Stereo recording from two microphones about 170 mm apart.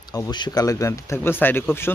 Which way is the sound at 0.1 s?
25° left (ahead or behind).